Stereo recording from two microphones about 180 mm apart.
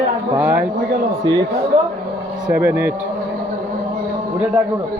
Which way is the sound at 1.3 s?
25° right (ahead or behind).